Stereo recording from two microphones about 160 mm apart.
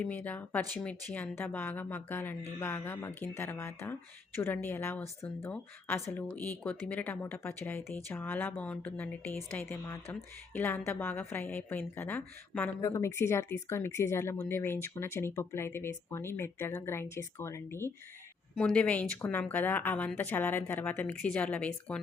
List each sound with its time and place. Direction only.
0.0 s a woman's voice: 10° left (ahead or behind)
18.5 s a woman's voice: 5° left (ahead or behind)